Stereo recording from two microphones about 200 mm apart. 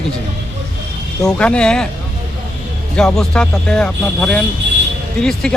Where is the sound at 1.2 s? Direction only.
5° left (ahead or behind).